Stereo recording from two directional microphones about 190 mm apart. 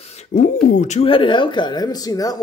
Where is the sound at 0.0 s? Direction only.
35° left (ahead or behind).